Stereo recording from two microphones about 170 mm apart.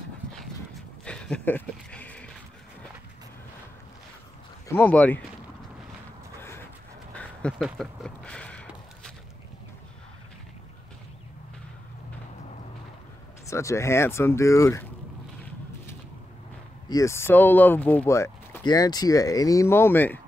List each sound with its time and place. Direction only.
0.2 s dog: 5° left (ahead or behind)
1.0 s a sound: 5° left (ahead or behind)
4.6 s speech: 10° left (ahead or behind)
6.4 s a sound: 15° left (ahead or behind)
13.5 s speech: 15° left (ahead or behind)
16.9 s speech: 15° left (ahead or behind)